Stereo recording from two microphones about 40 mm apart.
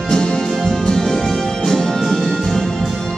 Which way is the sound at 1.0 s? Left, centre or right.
Centre.